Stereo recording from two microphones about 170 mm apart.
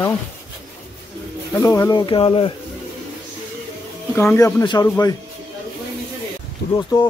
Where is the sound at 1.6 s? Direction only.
20° left (ahead or behind).